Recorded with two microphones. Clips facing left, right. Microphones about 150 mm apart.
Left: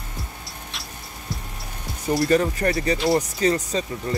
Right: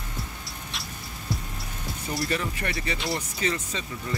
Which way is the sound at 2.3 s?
40° left (ahead or behind).